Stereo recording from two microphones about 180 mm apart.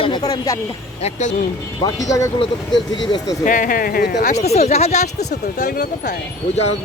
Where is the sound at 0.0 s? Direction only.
25° left (ahead or behind).